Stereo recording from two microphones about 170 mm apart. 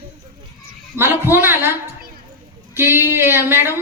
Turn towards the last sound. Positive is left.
turn(degrees=-15)  # may be behind; listen again after turning